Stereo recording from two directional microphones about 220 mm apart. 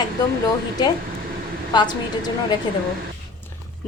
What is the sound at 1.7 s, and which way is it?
Speech, 20° left (ahead or behind).